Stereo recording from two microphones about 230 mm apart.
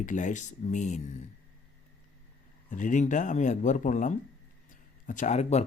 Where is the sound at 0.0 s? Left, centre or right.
Left.